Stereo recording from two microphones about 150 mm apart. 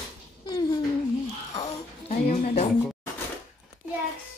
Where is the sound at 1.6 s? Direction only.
50° left (ahead or behind).